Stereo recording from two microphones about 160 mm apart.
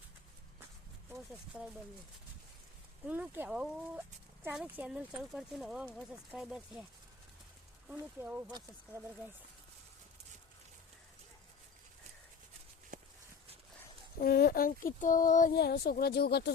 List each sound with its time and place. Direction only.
1.3 s speech: centre (ahead or behind)
3.1 s speech: 10° right (ahead or behind)
7.9 s speech: 10° right (ahead or behind)
12.9 s a sound: 55° right (ahead or behind)
14.2 s a sound: 70° left (ahead or behind); by 15.5 s 55° left (ahead or behind)
15.5 s speech: 80° left